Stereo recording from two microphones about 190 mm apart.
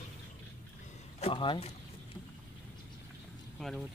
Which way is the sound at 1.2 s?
25° left (ahead or behind).